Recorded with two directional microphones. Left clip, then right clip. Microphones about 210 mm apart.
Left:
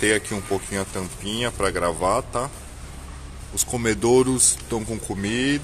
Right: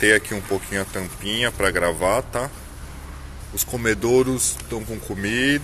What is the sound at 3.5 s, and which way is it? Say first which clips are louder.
Speech: right 1 dB; 15° left (ahead or behind).